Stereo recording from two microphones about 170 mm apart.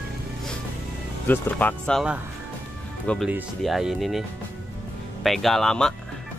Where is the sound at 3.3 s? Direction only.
5° right (ahead or behind).